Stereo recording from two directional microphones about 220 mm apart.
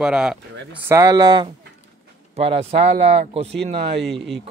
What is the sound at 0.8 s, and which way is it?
Speech, 15° right (ahead or behind).